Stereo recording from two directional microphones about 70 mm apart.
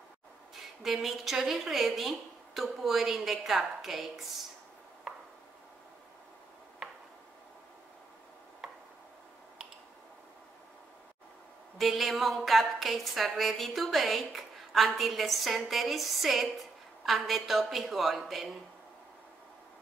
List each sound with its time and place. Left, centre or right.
0.8 s a woman's voice: centre
11.8 s a woman's voice: centre